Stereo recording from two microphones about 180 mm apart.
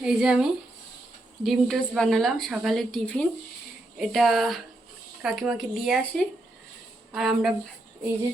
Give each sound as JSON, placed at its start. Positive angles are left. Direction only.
{"t": 0.0, "sound": "a woman's voice", "side_deg": -5}
{"t": 1.5, "sound": "a woman's voice", "side_deg": 0}